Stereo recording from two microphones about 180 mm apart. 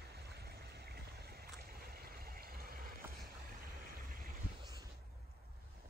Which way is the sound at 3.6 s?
55° right (ahead or behind).